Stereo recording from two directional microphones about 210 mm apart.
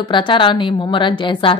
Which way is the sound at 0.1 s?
25° left (ahead or behind).